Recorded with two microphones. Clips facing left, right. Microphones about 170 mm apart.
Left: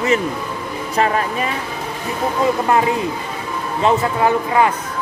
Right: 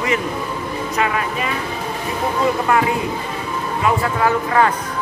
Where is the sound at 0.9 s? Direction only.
35° left (ahead or behind).